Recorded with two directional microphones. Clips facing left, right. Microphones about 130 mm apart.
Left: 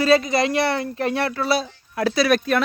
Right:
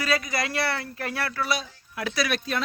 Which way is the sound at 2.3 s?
60° left (ahead or behind).